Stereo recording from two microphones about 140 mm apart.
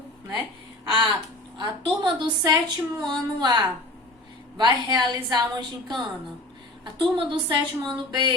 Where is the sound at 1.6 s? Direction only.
35° right (ahead or behind).